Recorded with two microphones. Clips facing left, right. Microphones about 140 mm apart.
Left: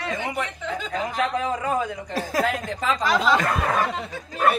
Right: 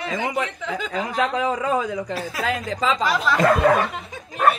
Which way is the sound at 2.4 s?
90° right.